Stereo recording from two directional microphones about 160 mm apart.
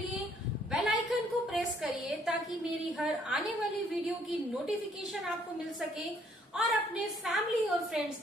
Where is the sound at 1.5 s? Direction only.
Centre (ahead or behind).